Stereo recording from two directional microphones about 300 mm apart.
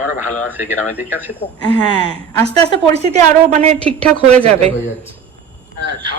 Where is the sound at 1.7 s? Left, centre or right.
Centre.